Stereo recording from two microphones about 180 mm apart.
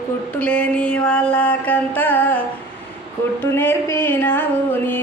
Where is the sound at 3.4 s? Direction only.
10° left (ahead or behind).